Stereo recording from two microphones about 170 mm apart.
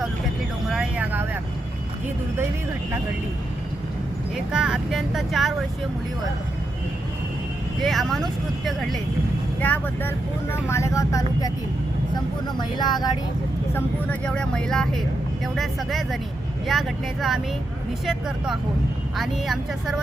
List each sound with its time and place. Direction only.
0.7 s vehicle: 5° right (ahead or behind)
4.5 s speech: 5° right (ahead or behind)
7.8 s speech: centre (ahead or behind); by 11.5 s 20° left (ahead or behind)
12.5 s speech: 25° left (ahead or behind)
13.7 s speech: 5° left (ahead or behind)